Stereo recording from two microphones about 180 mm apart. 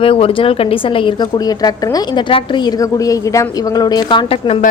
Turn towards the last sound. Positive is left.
turn(degrees=30)  # may be behind; listen again after turning